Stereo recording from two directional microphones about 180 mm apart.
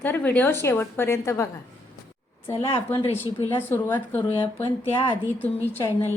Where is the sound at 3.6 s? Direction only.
10° left (ahead or behind).